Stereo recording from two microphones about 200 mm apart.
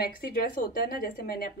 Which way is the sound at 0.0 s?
50° left (ahead or behind).